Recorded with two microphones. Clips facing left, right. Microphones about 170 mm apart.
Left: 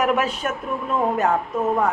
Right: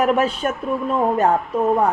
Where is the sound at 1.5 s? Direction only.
30° right (ahead or behind).